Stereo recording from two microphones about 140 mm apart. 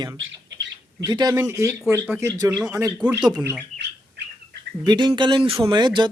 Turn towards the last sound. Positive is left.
turn(degrees=-30)  # may be behind; listen again after turning